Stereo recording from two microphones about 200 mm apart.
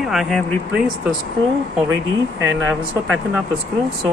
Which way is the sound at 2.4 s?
10° right (ahead or behind).